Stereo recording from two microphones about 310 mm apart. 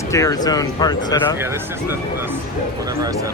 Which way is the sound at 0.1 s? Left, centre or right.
Centre.